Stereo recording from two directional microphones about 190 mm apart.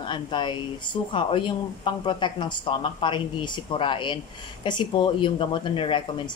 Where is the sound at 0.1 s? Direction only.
25° left (ahead or behind).